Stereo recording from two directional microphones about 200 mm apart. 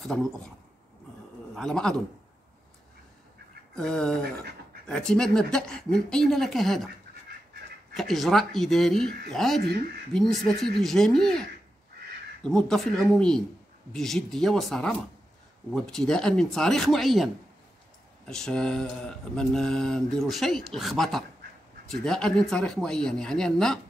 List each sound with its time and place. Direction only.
0.0 s mantra: 5° left (ahead or behind)
1.5 s speech: 5° left (ahead or behind)
3.7 s mantra: 5° left (ahead or behind)
7.9 s mantra: centre (ahead or behind)
12.4 s mantra: 5° left (ahead or behind)